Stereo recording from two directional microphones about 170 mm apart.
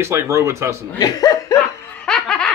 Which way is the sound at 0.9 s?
20° left (ahead or behind).